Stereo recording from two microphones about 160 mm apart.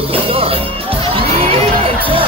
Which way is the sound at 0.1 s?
35° right (ahead or behind).